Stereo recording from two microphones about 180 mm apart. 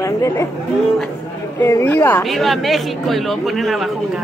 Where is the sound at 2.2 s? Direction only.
Centre (ahead or behind).